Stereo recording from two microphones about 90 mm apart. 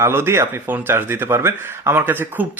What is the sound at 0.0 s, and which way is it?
Speech, 25° right (ahead or behind).